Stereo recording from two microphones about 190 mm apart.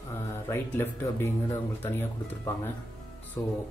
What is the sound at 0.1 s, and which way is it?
Speech, 15° left (ahead or behind).